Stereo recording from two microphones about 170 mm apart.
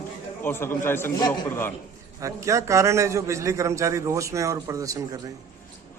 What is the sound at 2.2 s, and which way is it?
A man's voice, 20° right (ahead or behind).